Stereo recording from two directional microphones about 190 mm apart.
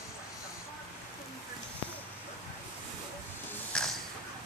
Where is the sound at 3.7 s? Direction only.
5° left (ahead or behind).